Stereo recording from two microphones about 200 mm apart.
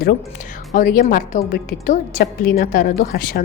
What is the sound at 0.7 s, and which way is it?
A woman's voice, 40° left (ahead or behind).